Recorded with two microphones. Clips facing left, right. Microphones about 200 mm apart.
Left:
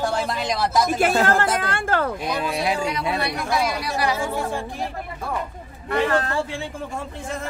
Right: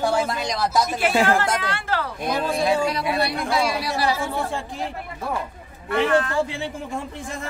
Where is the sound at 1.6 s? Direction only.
50° left (ahead or behind).